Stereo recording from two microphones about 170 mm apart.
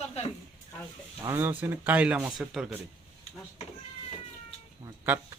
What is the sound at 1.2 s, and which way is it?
A man's voice, 15° right (ahead or behind).